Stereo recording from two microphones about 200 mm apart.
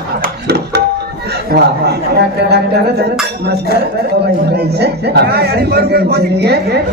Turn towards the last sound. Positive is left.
turn(degrees=-55)  # may be behind; listen again after turning